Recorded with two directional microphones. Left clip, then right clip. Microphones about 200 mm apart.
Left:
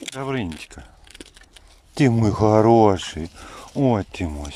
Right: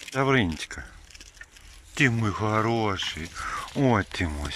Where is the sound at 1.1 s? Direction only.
40° left (ahead or behind).